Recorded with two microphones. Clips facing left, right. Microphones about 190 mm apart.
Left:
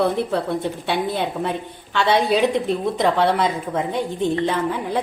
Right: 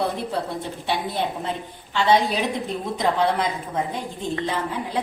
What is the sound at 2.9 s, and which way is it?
Speech, 65° left (ahead or behind).